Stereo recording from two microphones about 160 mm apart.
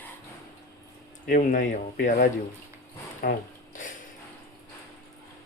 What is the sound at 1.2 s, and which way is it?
Speech, 60° left (ahead or behind).